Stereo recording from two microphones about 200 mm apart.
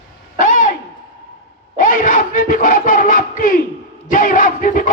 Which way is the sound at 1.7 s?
40° left (ahead or behind).